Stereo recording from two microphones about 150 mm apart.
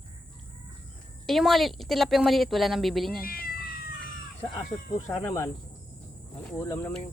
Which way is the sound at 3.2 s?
80° left.